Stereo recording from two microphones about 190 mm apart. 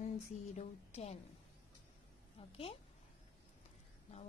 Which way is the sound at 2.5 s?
30° left (ahead or behind).